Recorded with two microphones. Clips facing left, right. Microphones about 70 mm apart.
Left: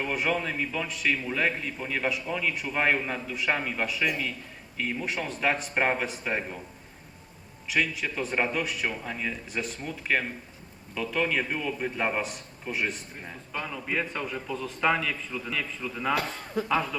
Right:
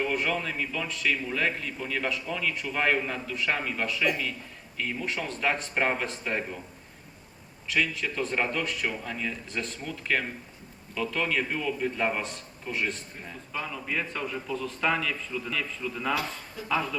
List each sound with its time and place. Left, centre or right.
0.0 s a man's voice: centre
7.7 s a man's voice: centre
13.5 s a man's voice: centre
16.6 s speech: left